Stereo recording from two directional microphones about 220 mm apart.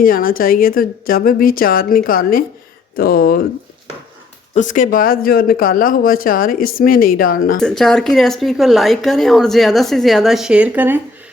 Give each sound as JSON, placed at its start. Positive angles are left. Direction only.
{"t": 0.0, "sound": "speech", "side_deg": 40}
{"t": 4.5, "sound": "speech", "side_deg": 35}
{"t": 7.6, "sound": "speech", "side_deg": 0}